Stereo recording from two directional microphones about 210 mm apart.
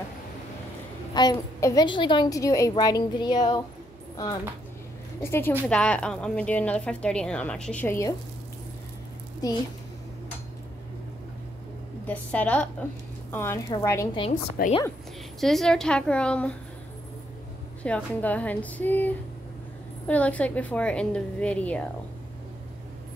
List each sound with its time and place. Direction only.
1.1 s a woman's voice: 20° left (ahead or behind)
5.2 s a woman's voice: 10° left (ahead or behind)
12.1 s a woman's voice: 5° left (ahead or behind)
14.6 s a woman's voice: 45° left (ahead or behind)
15.4 s a woman's voice: centre (ahead or behind)
17.8 s a woman's voice: 5° left (ahead or behind)